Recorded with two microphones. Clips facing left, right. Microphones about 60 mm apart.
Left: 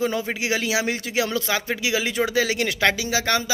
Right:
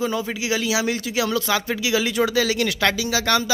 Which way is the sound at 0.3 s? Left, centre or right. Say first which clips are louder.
Right 1 dB; left.